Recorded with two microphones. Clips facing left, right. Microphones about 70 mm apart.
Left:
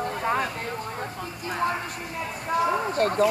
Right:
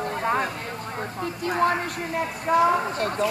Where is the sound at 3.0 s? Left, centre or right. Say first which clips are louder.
Left 3 dB; left.